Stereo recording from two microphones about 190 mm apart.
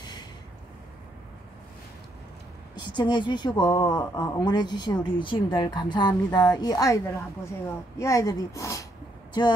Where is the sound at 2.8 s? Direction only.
25° left (ahead or behind).